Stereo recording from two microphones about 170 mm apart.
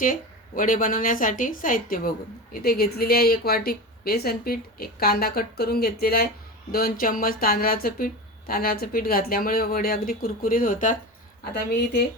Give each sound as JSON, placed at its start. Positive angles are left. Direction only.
{"t": 0.0, "sound": "speech", "side_deg": 55}
{"t": 11.5, "sound": "speech", "side_deg": 75}